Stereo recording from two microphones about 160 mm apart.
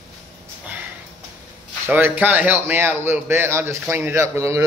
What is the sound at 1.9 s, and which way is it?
Speech, 10° right (ahead or behind).